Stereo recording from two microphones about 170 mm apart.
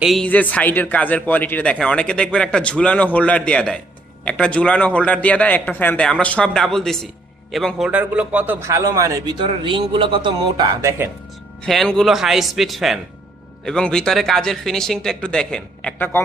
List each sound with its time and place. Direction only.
0.0 s a man's voice: centre (ahead or behind); by 9.3 s 20° right (ahead or behind)
9.5 s speech: 30° right (ahead or behind)
10.8 s a man's voice: 15° right (ahead or behind)
11.6 s speech: centre (ahead or behind)